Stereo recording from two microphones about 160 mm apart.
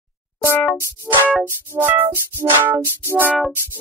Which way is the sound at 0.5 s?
10° left (ahead or behind).